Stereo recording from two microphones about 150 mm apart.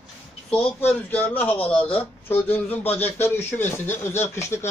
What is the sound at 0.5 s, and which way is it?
Speech, 10° left (ahead or behind).